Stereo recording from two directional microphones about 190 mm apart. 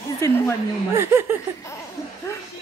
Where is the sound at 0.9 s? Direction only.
10° right (ahead or behind).